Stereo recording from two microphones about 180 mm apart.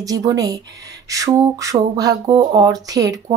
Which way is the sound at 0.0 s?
20° right (ahead or behind).